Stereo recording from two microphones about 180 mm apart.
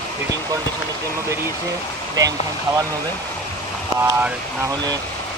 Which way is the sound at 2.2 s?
20° right (ahead or behind).